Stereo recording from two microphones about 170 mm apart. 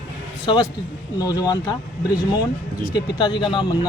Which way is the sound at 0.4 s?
25° left (ahead or behind).